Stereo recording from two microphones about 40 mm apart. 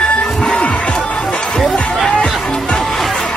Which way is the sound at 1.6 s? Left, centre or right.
Centre.